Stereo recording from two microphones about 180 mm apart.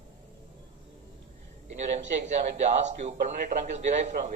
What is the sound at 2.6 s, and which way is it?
Speech, 40° right (ahead or behind).